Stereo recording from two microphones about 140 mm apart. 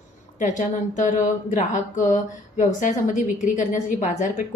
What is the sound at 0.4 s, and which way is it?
Speech, 60° left (ahead or behind).